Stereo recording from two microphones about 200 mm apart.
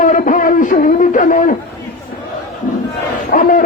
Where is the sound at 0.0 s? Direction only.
40° left (ahead or behind).